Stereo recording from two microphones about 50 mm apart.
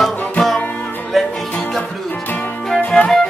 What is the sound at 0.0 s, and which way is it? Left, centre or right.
Music, centre.